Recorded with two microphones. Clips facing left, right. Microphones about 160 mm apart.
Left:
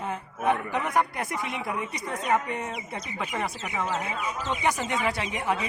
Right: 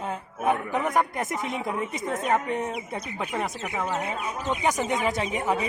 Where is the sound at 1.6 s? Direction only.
25° right (ahead or behind).